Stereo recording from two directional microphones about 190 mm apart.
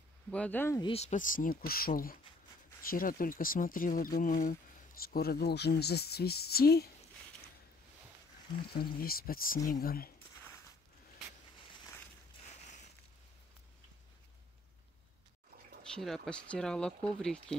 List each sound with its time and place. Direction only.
0.3 s speech: 5° left (ahead or behind)
0.7 s speech: 30° left (ahead or behind); by 6.9 s 55° left (ahead or behind)
8.7 s speech: 50° left (ahead or behind)
10.1 s a sound: 10° left (ahead or behind)
12.4 s a sound: 35° left (ahead or behind)
15.9 s speech: centre (ahead or behind)